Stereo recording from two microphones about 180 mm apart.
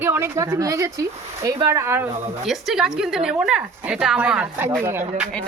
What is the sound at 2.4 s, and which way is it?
A woman's voice, centre (ahead or behind).